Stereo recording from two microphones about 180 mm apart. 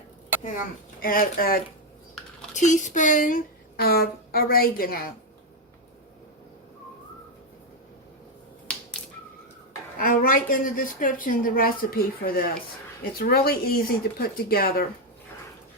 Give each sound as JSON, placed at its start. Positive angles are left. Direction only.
{"t": 0.9, "sound": "a woman's voice", "side_deg": 55}
{"t": 2.6, "sound": "a woman's voice", "side_deg": 45}
{"t": 8.7, "sound": "a sound", "side_deg": 5}
{"t": 10.0, "sound": "a woman's voice", "side_deg": 50}